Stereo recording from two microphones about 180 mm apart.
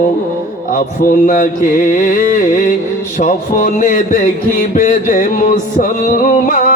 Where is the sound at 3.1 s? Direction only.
45° left (ahead or behind).